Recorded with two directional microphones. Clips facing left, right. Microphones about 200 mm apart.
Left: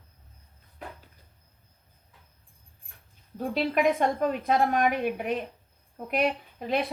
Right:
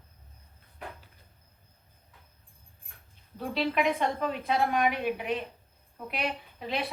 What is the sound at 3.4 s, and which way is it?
A woman's voice, 50° left (ahead or behind).